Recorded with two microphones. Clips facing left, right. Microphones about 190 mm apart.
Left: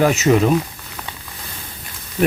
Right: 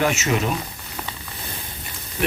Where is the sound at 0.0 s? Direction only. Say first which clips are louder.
Left 7 dB; 35° left (ahead or behind).